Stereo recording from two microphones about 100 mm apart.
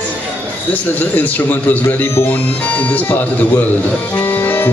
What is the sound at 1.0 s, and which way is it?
Speech, 15° left (ahead or behind).